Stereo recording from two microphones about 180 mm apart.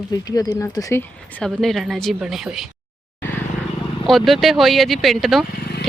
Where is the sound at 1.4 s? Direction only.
Centre (ahead or behind).